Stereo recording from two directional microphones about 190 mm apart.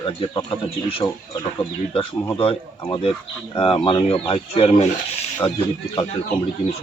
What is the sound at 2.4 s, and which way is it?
A man's voice, 30° left (ahead or behind).